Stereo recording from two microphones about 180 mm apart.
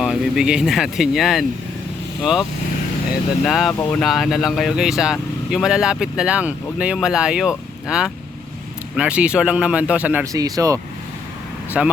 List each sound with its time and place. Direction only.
0.0 s speech: 5° right (ahead or behind)
3.7 s speech: 15° left (ahead or behind)
4.0 s speech: centre (ahead or behind)
10.3 s speech: 20° right (ahead or behind)
11.8 s speech: 5° right (ahead or behind)